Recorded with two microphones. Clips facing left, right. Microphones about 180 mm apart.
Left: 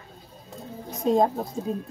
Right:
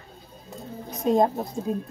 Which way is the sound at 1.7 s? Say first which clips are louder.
Right 3 dB; 10° right (ahead or behind).